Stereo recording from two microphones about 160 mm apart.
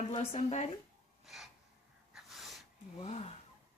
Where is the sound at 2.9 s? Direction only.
40° left (ahead or behind).